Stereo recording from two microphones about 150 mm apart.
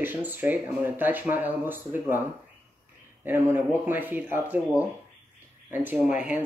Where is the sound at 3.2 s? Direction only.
15° right (ahead or behind).